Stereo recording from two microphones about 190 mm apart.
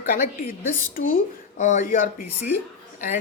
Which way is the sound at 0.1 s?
45° left (ahead or behind).